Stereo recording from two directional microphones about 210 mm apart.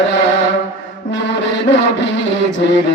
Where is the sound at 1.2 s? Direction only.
55° left (ahead or behind).